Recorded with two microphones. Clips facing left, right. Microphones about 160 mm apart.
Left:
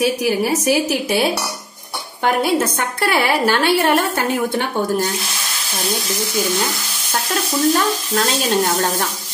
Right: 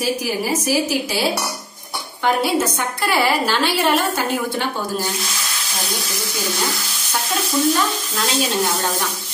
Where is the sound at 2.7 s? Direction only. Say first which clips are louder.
Left 1 dB; 55° left (ahead or behind).